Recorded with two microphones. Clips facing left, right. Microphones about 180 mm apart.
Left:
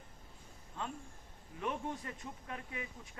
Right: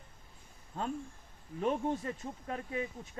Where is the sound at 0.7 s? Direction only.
40° right (ahead or behind).